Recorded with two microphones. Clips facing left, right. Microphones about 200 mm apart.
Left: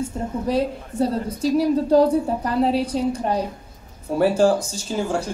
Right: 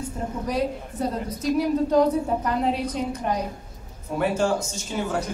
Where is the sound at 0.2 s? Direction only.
30° left (ahead or behind).